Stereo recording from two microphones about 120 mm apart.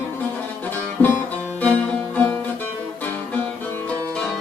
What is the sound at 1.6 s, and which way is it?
Music, 10° left (ahead or behind).